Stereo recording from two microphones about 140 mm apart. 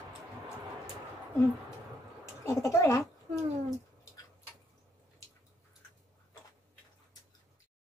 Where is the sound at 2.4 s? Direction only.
20° left (ahead or behind).